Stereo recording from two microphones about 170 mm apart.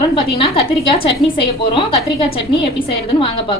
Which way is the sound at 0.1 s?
35° left (ahead or behind).